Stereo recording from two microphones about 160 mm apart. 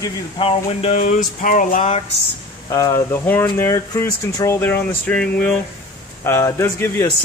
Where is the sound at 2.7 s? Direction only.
20° left (ahead or behind).